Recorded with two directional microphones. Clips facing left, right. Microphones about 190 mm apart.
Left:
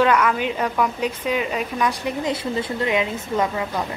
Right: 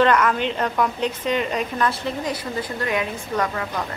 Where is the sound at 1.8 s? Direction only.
20° left (ahead or behind).